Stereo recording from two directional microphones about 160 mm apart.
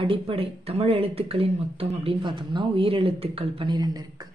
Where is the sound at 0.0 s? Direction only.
35° right (ahead or behind).